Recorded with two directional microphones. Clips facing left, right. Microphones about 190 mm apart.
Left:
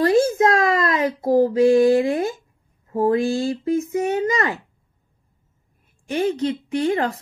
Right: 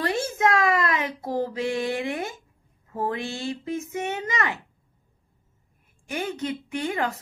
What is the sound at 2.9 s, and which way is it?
A woman's voice, 35° left (ahead or behind).